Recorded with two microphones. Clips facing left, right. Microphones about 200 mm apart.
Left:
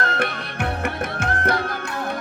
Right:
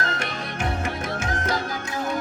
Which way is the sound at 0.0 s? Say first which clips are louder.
Left 4 dB; 60° left (ahead or behind).